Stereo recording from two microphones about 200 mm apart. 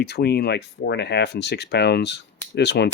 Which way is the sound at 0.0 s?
55° left (ahead or behind).